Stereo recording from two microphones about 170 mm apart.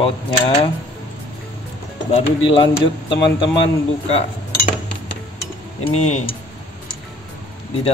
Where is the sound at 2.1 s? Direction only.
30° left (ahead or behind).